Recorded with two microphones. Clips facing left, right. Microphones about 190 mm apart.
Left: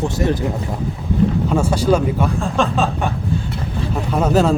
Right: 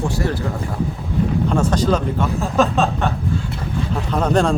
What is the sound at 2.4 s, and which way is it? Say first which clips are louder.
Speech: right 1 dB; 5° right (ahead or behind).